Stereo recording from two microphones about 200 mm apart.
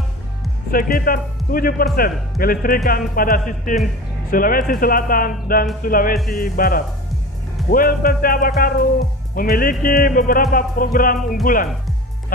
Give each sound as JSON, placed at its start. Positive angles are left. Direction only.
{"t": 0.7, "sound": "a man's voice", "side_deg": 45}